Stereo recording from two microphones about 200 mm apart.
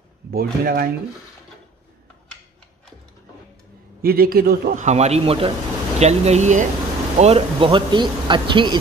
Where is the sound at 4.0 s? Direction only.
50° right (ahead or behind); by 8.7 s 25° right (ahead or behind).